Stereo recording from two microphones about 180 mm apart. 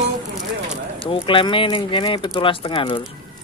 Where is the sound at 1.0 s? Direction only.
30° left (ahead or behind).